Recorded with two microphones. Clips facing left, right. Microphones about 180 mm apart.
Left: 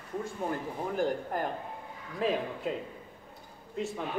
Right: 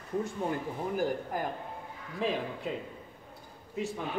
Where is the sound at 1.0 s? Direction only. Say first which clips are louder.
Left 2 dB; centre (ahead or behind).